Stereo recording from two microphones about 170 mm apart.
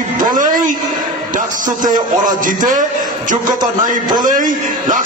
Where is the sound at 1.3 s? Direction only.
50° right (ahead or behind).